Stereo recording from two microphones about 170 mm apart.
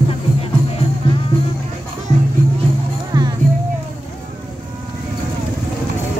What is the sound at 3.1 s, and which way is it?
Music, 25° right (ahead or behind).